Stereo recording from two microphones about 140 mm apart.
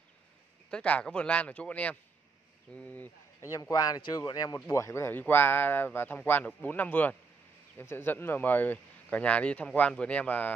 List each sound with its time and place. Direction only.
0.7 s speech: 5° left (ahead or behind)
3.5 s speech: 25° left (ahead or behind)